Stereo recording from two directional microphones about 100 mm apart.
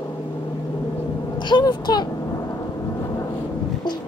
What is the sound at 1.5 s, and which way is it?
Speech, 45° left (ahead or behind).